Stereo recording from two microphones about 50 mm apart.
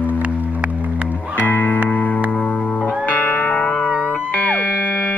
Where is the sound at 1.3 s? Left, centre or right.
Left.